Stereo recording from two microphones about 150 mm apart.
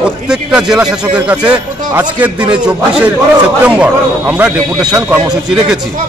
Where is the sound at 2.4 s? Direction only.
30° right (ahead or behind).